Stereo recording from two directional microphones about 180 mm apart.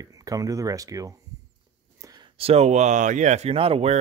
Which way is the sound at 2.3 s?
35° right (ahead or behind).